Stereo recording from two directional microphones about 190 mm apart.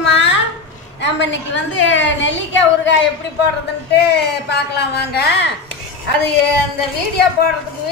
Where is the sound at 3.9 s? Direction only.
60° left (ahead or behind).